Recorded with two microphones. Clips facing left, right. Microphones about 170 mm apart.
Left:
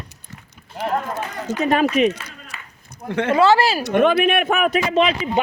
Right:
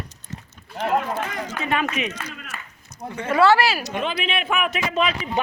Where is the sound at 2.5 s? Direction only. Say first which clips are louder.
Right 2 dB; 50° right (ahead or behind).